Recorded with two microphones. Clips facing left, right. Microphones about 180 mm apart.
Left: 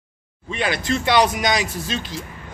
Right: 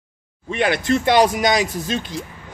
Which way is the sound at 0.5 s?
60° right (ahead or behind).